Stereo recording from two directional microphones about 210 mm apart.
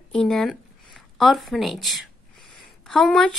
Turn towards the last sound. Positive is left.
turn(degrees=5)  # may be behind; listen again after turning